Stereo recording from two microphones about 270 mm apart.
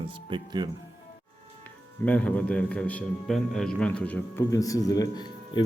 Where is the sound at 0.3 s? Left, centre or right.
Centre.